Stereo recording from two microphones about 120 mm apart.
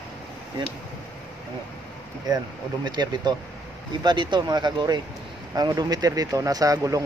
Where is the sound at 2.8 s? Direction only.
35° right (ahead or behind).